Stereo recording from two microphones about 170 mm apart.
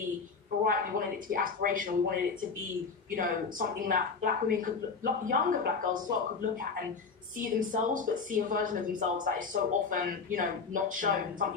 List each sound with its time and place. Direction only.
0.6 s speech: 55° right (ahead or behind)